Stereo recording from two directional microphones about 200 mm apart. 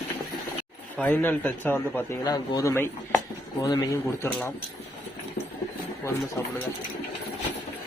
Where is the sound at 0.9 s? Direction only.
10° left (ahead or behind).